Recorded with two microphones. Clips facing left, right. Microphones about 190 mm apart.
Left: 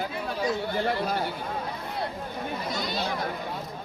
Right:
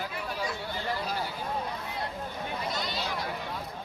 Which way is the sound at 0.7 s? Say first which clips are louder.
Left 6 dB; 55° left (ahead or behind).